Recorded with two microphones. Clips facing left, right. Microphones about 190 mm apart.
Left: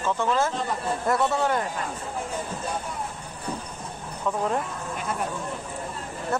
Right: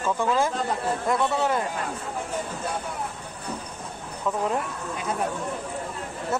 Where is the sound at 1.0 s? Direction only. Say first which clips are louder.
Left 1 dB; centre (ahead or behind).